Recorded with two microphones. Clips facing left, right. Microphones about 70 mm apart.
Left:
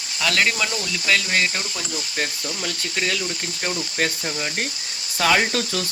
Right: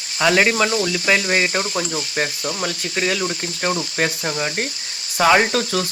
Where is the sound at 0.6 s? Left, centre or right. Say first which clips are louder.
Right 5 dB; right.